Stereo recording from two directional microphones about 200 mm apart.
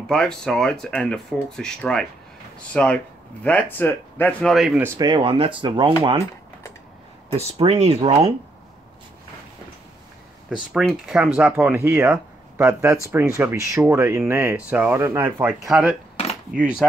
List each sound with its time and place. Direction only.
0.1 s speech: 5° left (ahead or behind)
4.9 s speech: 20° right (ahead or behind)
7.3 s speech: 30° right (ahead or behind)
10.7 s speech: centre (ahead or behind)